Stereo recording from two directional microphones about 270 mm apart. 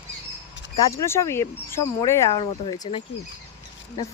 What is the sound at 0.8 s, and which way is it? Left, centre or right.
Speech, centre.